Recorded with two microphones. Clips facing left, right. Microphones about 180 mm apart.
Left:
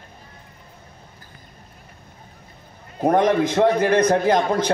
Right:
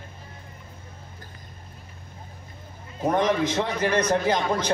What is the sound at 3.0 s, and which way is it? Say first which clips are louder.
A man's voice: left 5 dB; 55° left (ahead or behind).